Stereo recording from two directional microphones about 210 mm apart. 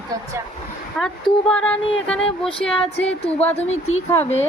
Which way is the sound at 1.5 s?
5° left (ahead or behind).